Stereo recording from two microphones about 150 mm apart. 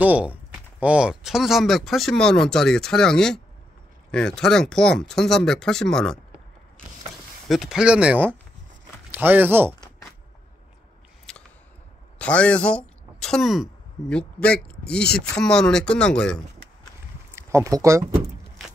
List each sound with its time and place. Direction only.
0.0 s speech: 10° right (ahead or behind)
7.4 s speech: centre (ahead or behind)
11.3 s a sound: 5° left (ahead or behind)
12.2 s speech: 10° left (ahead or behind)
17.4 s speech: 20° right (ahead or behind)